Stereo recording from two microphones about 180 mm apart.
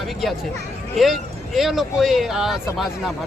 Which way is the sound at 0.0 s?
Centre (ahead or behind).